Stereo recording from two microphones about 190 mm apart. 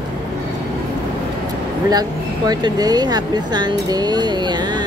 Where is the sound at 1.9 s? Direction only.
20° right (ahead or behind).